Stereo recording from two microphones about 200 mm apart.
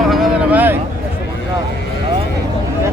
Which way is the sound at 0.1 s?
5° right (ahead or behind).